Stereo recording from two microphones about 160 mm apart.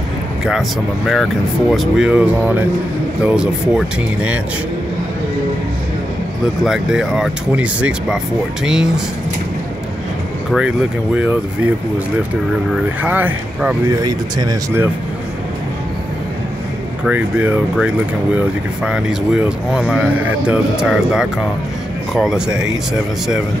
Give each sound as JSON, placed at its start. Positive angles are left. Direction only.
{"t": 0.5, "sound": "speech", "side_deg": 0}
{"t": 6.6, "sound": "speech", "side_deg": -5}
{"t": 11.1, "sound": "speech", "side_deg": -10}
{"t": 12.7, "sound": "speech", "side_deg": -10}
{"t": 13.8, "sound": "speech", "side_deg": -25}
{"t": 17.0, "sound": "speech", "side_deg": -10}